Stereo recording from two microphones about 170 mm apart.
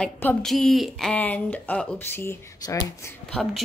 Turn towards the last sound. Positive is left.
turn(degrees=5)  # may be behind; listen again after turning